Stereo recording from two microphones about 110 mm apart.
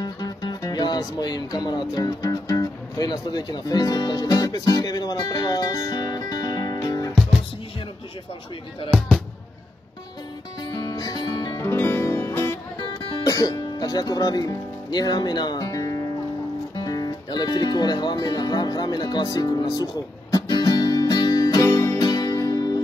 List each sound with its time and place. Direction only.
0.0 s speech: 40° left (ahead or behind)
7.2 s music: centre (ahead or behind)
10.6 s music: 40° left (ahead or behind)
11.6 s music: 20° left (ahead or behind)
13.1 s speech: 35° left (ahead or behind)
16.7 s music: 35° left (ahead or behind)
21.6 s music: 20° left (ahead or behind)
22.0 s music: 35° left (ahead or behind)